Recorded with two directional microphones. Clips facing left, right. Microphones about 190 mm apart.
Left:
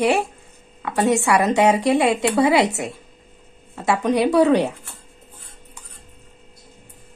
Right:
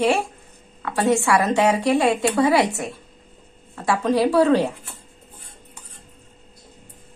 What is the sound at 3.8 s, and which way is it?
Speech, 20° left (ahead or behind).